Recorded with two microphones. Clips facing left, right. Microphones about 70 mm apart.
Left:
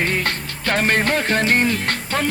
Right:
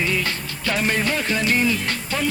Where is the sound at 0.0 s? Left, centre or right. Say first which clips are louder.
Left 2 dB; left.